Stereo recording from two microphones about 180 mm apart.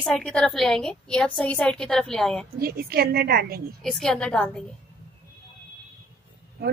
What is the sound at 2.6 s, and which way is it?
A woman's voice, 55° right (ahead or behind).